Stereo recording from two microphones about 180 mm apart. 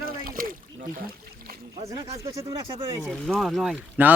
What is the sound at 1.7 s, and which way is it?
Speech, 20° right (ahead or behind).